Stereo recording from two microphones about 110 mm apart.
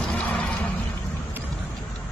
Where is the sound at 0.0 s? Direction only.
10° left (ahead or behind).